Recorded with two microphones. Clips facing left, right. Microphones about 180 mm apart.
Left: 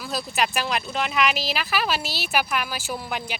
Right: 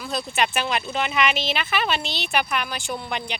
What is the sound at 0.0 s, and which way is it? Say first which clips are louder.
Speech: right 1 dB; centre (ahead or behind).